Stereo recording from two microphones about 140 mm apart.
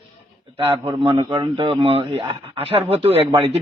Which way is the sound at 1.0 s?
35° right (ahead or behind).